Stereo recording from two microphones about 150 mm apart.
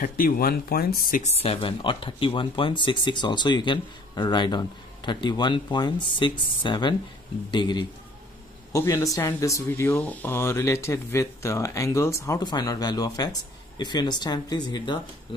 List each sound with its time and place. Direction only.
0.0 s speech: 75° left (ahead or behind)
1.2 s speech: 40° left (ahead or behind)
8.7 s speech: 20° left (ahead or behind)